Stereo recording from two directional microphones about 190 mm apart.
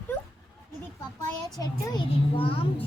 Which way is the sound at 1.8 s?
25° left (ahead or behind).